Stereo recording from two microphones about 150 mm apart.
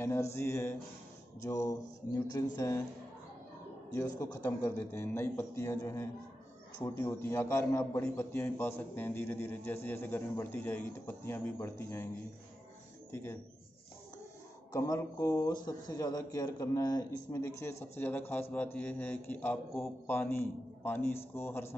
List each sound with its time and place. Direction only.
0.0 s speech: 20° left (ahead or behind)
4.2 s a man's voice: 20° left (ahead or behind)
13.1 s a man's voice: 15° left (ahead or behind)
14.7 s a man's voice: 20° left (ahead or behind)